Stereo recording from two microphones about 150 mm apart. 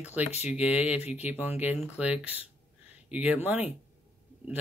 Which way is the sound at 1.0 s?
45° left (ahead or behind).